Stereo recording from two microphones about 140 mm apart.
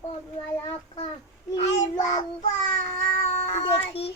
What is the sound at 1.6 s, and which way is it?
Child singing, 55° left (ahead or behind).